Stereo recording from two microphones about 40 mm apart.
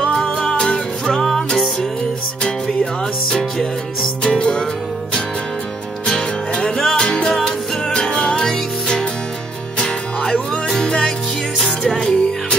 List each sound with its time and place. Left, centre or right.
0.0 s music: left
1.0 s music: centre
6.0 s music: centre